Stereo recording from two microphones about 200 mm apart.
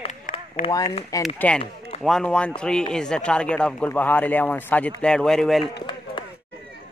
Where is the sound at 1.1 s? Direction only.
15° left (ahead or behind).